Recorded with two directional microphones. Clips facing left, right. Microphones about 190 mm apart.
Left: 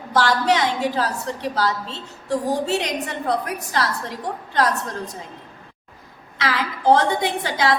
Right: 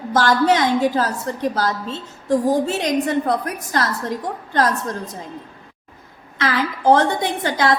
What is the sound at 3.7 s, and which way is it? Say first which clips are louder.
Speech: right 4 dB; 50° right (ahead or behind).